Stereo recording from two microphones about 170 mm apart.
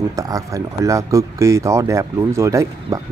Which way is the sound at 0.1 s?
20° right (ahead or behind).